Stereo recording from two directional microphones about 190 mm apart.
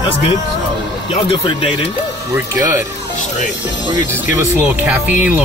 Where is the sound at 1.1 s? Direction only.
30° left (ahead or behind).